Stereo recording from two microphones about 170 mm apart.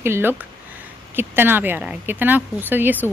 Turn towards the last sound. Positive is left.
turn(degrees=-10)  # may be behind; listen again after turning